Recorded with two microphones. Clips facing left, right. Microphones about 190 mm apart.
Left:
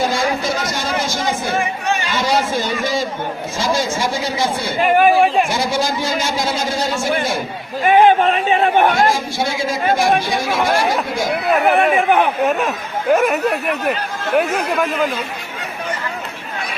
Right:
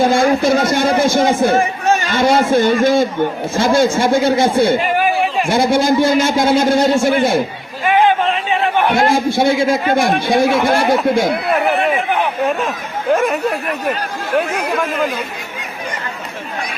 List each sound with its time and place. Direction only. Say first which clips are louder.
0.0 s a man's voice: right 6 dB; 55° right (ahead or behind)
1.5 s a man's voice: right 5 dB; 40° right (ahead or behind)
4.8 s speech: left 4 dB; 50° left (ahead or behind)
5.5 s a man's voice: right 6 dB; 55° right (ahead or behind)
8.4 s a sound: left 2 dB; 50° left (ahead or behind)
8.9 s a man's voice: right 3 dB; 55° right (ahead or behind)
11.9 s speech: left 3 dB; 50° left (ahead or behind)
12.5 s speech: even; 5° left (ahead or behind)